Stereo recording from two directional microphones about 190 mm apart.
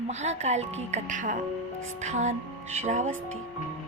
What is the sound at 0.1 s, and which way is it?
A woman's voice, 35° right (ahead or behind).